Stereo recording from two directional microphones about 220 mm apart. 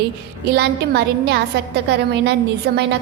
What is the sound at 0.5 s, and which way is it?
A woman's voice, 45° right (ahead or behind).